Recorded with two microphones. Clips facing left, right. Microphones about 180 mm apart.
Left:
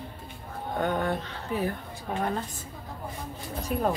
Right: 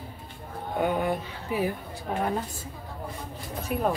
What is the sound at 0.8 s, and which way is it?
Speech, 10° right (ahead or behind).